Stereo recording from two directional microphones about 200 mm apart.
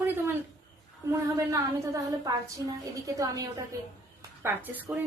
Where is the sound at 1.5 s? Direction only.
15° right (ahead or behind).